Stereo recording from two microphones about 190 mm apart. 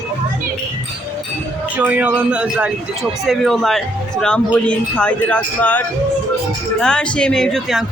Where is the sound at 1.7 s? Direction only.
10° right (ahead or behind).